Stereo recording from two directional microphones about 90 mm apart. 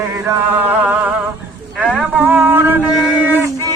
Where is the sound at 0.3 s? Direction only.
20° right (ahead or behind).